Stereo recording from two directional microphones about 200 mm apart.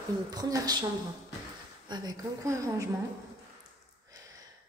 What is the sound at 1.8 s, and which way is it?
A woman's voice, 20° right (ahead or behind).